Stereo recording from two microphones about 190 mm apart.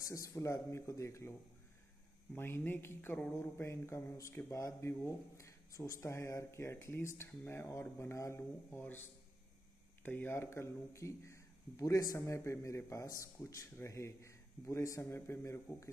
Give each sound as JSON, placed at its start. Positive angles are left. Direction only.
{"t": 0.0, "sound": "speech", "side_deg": 15}
{"t": 2.3, "sound": "speech", "side_deg": 10}
{"t": 10.0, "sound": "speech", "side_deg": 10}